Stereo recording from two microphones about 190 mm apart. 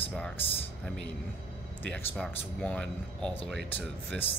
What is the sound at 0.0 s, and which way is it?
Speech, 10° left (ahead or behind).